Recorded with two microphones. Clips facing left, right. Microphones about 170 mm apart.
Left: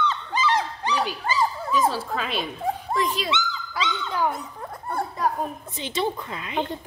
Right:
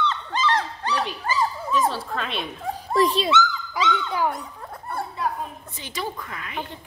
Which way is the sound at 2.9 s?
35° right (ahead or behind).